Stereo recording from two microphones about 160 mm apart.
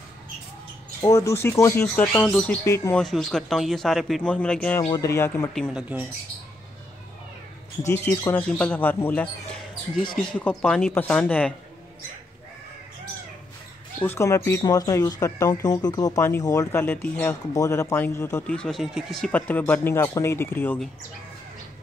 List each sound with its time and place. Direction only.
1.0 s speech: 15° left (ahead or behind)
2.6 s speech: 20° left (ahead or behind)
3.0 s speech: 5° left (ahead or behind)
4.9 s speech: 20° left (ahead or behind)
5.5 s speech: centre (ahead or behind)
7.8 s speech: 15° left (ahead or behind)
10.5 s speech: 5° left (ahead or behind)
13.9 s speech: 15° left (ahead or behind)
18.5 s speech: 5° left (ahead or behind)